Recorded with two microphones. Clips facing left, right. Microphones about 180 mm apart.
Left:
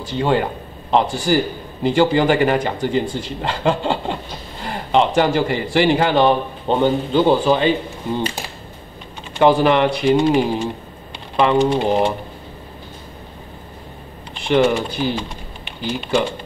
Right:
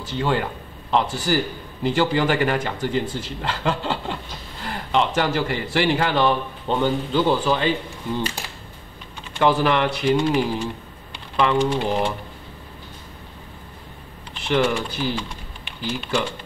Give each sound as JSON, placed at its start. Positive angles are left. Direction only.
{"t": 0.2, "sound": "speech", "side_deg": 20}
{"t": 14.5, "sound": "speech", "side_deg": 20}